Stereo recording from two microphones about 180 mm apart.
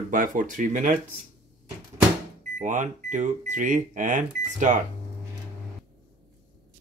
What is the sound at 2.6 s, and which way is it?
Speech, 45° right (ahead or behind).